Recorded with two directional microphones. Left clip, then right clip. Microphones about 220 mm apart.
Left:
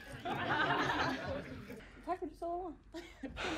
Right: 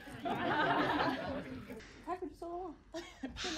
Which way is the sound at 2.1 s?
5° right (ahead or behind).